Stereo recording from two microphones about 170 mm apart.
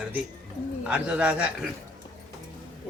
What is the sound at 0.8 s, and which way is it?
Speech, 5° right (ahead or behind).